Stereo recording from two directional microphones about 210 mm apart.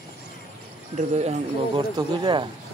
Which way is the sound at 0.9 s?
35° right (ahead or behind).